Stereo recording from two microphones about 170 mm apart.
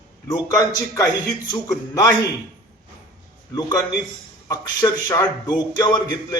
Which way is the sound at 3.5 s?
20° left (ahead or behind).